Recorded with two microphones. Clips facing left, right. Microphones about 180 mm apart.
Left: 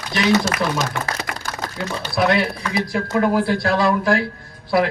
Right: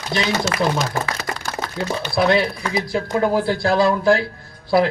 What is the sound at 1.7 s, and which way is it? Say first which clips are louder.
Speech: right 1 dB; 30° right (ahead or behind).